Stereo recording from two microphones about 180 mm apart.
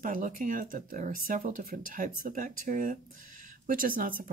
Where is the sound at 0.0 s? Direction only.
50° right (ahead or behind).